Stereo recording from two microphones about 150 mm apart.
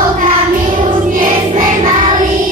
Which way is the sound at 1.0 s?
65° right (ahead or behind).